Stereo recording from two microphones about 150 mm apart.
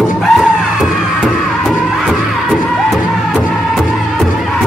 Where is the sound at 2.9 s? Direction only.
Centre (ahead or behind).